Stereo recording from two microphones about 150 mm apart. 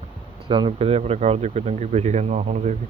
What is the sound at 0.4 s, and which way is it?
Speech, 35° right (ahead or behind).